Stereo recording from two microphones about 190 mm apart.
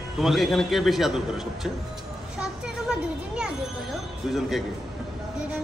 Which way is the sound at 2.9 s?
5° right (ahead or behind).